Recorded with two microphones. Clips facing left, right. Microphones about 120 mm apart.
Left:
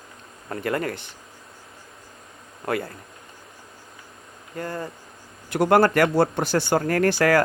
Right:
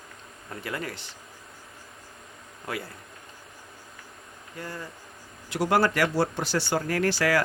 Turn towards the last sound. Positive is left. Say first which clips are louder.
# left 5 dB
turn(degrees=50)  # may be behind; listen again after turning